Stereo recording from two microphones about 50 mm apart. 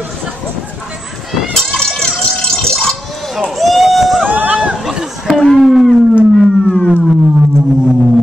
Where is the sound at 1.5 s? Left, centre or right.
Centre.